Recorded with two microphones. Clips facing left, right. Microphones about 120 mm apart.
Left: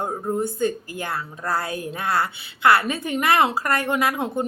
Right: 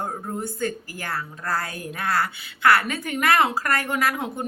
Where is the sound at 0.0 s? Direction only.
20° left (ahead or behind).